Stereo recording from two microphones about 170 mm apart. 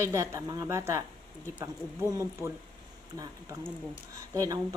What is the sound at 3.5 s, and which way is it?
Speech, 20° right (ahead or behind).